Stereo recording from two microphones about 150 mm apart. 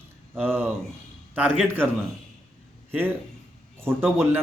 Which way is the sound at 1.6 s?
15° right (ahead or behind).